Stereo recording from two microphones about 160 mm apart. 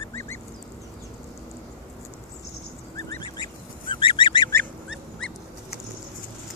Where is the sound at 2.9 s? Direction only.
25° left (ahead or behind).